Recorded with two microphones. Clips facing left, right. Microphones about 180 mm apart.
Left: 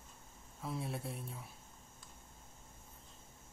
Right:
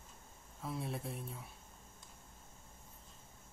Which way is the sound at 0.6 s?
Centre (ahead or behind).